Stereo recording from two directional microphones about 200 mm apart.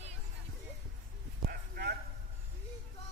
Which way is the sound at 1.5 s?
50° right (ahead or behind).